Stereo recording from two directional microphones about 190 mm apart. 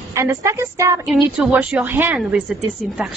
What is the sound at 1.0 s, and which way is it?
A woman's voice, 5° right (ahead or behind).